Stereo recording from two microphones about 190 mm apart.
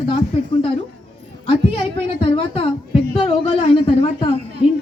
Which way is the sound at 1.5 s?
30° left (ahead or behind).